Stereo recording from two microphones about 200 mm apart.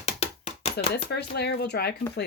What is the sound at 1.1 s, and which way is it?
Speech, 55° left (ahead or behind).